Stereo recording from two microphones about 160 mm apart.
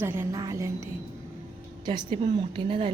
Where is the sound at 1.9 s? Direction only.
35° right (ahead or behind).